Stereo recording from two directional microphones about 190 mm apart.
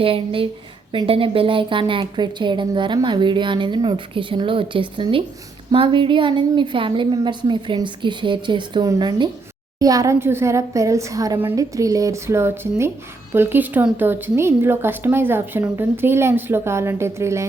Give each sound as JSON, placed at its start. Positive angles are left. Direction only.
{"t": 0.0, "sound": "a woman's voice", "side_deg": -30}